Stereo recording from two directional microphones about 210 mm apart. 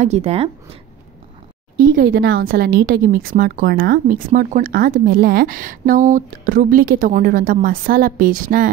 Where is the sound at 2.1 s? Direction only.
50° right (ahead or behind).